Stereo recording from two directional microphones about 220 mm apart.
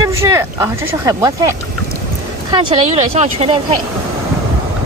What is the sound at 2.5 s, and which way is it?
Speech, 30° right (ahead or behind).